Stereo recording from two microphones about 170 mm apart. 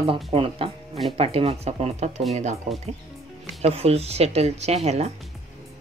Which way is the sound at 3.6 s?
35° right (ahead or behind).